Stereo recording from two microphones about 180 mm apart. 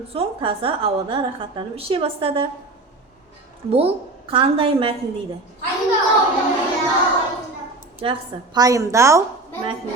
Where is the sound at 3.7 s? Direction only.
30° right (ahead or behind).